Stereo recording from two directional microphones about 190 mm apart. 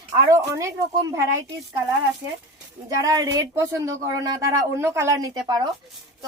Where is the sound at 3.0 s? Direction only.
20° right (ahead or behind).